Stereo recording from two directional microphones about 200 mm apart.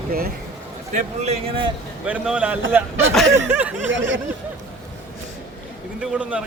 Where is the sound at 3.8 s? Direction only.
70° right (ahead or behind).